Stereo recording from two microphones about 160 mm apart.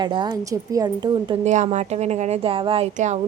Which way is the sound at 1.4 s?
45° right (ahead or behind).